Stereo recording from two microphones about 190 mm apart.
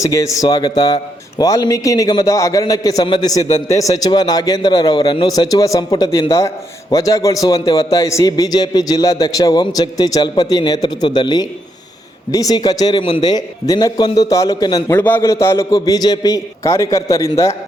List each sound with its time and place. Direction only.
0.0 s a man's voice: 15° left (ahead or behind)
7.6 s a man's voice: 30° left (ahead or behind)
7.9 s a man's voice: 15° left (ahead or behind)